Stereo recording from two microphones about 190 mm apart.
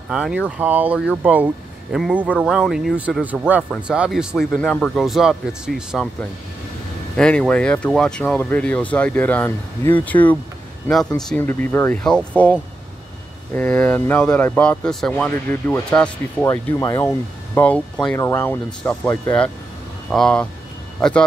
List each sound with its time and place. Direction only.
0.1 s speech: 5° right (ahead or behind)
7.2 s speech: 5° left (ahead or behind)
13.6 s speech: 10° left (ahead or behind)